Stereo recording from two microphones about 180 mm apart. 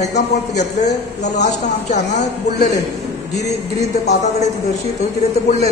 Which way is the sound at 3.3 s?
40° left (ahead or behind).